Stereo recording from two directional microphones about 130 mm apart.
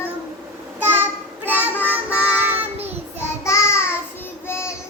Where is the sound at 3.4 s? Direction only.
20° left (ahead or behind).